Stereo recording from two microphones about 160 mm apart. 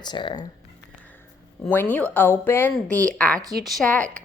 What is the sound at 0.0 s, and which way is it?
Speech, 30° left (ahead or behind).